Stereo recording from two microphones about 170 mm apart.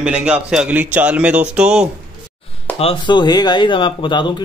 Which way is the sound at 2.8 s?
30° left (ahead or behind).